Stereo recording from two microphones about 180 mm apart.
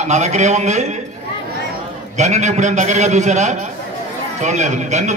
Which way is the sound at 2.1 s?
40° right (ahead or behind).